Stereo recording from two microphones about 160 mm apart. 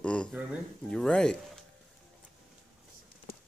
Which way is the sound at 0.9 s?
5° left (ahead or behind).